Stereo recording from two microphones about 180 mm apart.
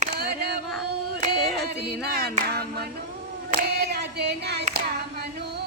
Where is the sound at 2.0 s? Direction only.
60° right (ahead or behind).